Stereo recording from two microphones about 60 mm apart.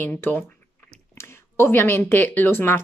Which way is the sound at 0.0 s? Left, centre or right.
Left.